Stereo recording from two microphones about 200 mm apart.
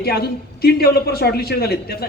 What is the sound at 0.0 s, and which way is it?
Speech, 50° left (ahead or behind).